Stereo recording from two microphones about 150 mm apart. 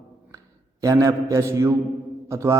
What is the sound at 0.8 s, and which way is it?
A man's voice, 20° right (ahead or behind).